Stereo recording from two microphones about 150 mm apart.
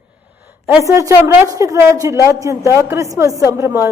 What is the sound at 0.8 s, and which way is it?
A woman's voice, 20° right (ahead or behind).